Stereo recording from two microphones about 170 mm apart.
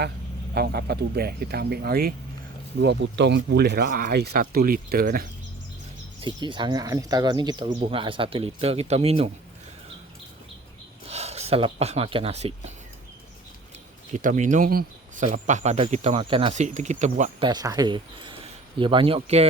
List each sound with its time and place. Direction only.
0.5 s speech: 70° right (ahead or behind)
2.8 s speech: 90° right; by 5.3 s 60° right (ahead or behind)
6.1 s speech: 30° right (ahead or behind)
11.1 s speech: 40° right (ahead or behind)
14.1 s speech: 45° right (ahead or behind)
16.6 s speech: 45° right (ahead or behind)
17.4 s speech: 25° right (ahead or behind)